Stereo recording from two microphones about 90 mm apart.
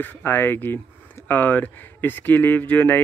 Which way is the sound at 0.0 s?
20° left (ahead or behind).